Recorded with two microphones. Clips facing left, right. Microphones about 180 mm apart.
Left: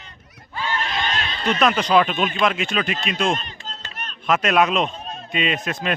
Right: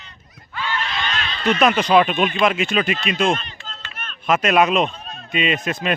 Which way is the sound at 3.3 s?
40° left (ahead or behind).